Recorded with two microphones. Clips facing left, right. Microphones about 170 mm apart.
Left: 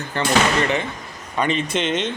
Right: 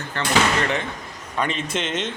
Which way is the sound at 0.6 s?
Centre (ahead or behind).